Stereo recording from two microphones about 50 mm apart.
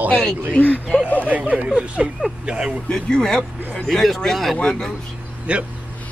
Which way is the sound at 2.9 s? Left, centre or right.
Centre.